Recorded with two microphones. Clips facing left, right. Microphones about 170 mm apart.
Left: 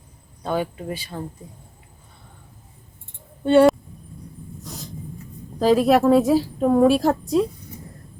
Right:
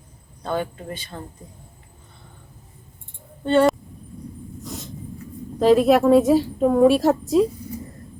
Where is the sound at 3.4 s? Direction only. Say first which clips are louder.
Left 3 dB; 10° left (ahead or behind).